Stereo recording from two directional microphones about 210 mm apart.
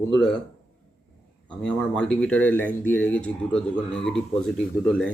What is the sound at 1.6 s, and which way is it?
Speech, 5° left (ahead or behind).